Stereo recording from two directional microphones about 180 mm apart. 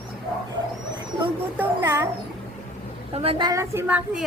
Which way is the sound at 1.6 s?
15° right (ahead or behind).